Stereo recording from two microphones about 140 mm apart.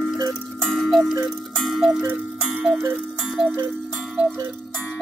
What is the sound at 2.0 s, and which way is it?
Clock, 10° right (ahead or behind).